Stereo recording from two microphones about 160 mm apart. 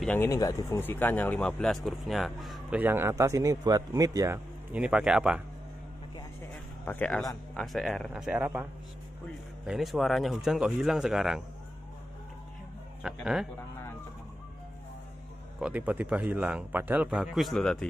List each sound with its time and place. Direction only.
0.0 s speech: 10° left (ahead or behind)
2.8 s speech: 15° right (ahead or behind)
4.7 s speech: 5° right (ahead or behind)
6.8 s speech: 10° left (ahead or behind); by 8.6 s 10° right (ahead or behind)
9.7 s speech: centre (ahead or behind)
13.0 s speech: centre (ahead or behind)
15.6 s speech: 10° right (ahead or behind)